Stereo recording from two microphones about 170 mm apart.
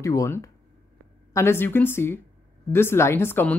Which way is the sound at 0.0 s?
15° left (ahead or behind).